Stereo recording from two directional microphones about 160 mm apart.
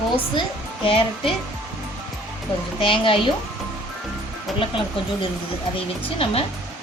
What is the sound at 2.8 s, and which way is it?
Speech, 35° left (ahead or behind).